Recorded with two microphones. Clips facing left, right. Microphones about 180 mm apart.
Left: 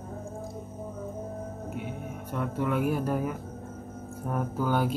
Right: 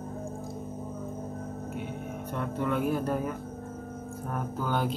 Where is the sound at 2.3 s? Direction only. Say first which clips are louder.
Left 1 dB; 5° left (ahead or behind).